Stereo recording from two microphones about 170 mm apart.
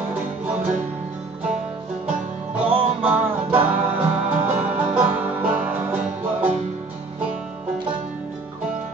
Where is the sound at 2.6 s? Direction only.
30° right (ahead or behind).